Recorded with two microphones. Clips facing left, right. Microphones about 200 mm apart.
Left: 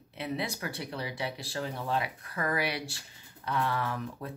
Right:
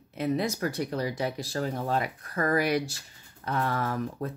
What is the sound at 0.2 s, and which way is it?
Speech, 45° right (ahead or behind).